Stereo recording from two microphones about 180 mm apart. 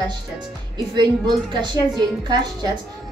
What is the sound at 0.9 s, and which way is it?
Speech, 25° right (ahead or behind).